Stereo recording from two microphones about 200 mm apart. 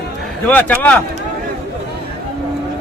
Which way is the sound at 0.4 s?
10° left (ahead or behind).